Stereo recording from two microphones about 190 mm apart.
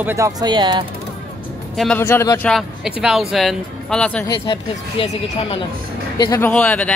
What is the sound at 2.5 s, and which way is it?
Speech, centre (ahead or behind).